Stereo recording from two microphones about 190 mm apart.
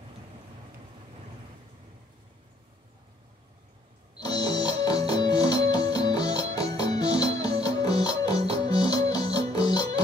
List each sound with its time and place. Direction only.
4.2 s music: 20° left (ahead or behind)